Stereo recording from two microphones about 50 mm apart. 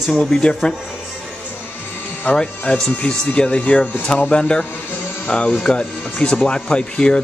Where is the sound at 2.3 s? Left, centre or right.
Left.